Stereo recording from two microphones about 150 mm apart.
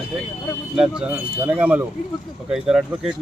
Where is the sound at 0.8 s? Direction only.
5° right (ahead or behind).